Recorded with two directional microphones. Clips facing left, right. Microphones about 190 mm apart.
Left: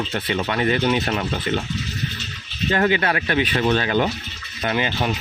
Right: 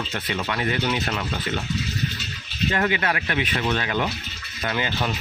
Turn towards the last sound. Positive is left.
turn(degrees=20)  # may be behind; listen again after turning